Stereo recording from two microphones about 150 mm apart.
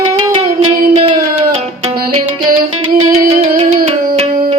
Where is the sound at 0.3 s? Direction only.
40° right (ahead or behind).